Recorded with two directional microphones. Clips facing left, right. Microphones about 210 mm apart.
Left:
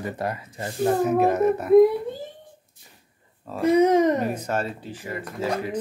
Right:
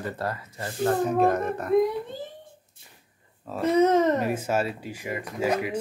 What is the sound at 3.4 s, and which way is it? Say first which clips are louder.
Speech: left 3 dB; centre (ahead or behind).